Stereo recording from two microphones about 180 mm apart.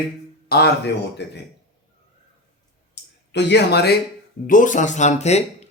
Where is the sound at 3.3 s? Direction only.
70° left (ahead or behind).